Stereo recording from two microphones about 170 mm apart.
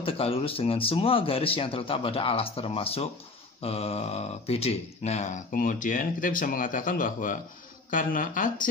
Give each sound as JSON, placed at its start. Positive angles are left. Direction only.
{"t": 0.0, "sound": "speech", "side_deg": 35}